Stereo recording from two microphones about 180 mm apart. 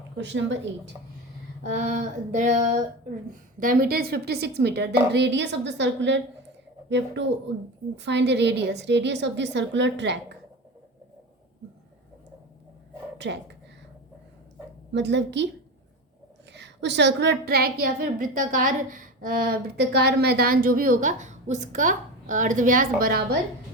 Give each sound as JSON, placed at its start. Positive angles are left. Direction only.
{"t": 0.2, "sound": "speech", "side_deg": -90}
{"t": 1.7, "sound": "a woman's voice", "side_deg": -45}
{"t": 13.1, "sound": "speech", "side_deg": -75}
{"t": 14.9, "sound": "a woman's voice", "side_deg": -75}
{"t": 16.5, "sound": "a woman's voice", "side_deg": -75}